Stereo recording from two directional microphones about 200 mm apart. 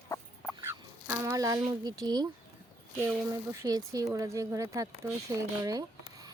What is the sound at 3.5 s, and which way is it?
Speech, 15° right (ahead or behind).